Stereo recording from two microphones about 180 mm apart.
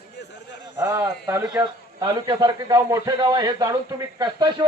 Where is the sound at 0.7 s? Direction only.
15° right (ahead or behind).